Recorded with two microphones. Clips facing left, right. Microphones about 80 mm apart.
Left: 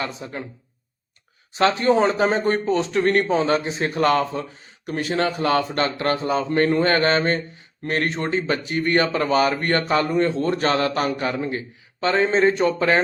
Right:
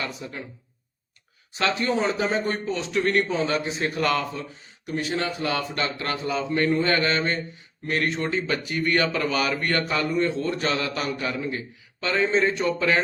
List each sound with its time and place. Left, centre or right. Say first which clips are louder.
0.0 s speech: left 3 dB; left
1.5 s speech: left 6 dB; left
4.9 s speech: left 4 dB; left